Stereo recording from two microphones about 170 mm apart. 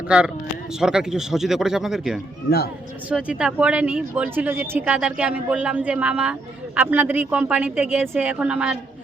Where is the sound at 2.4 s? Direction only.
65° left (ahead or behind).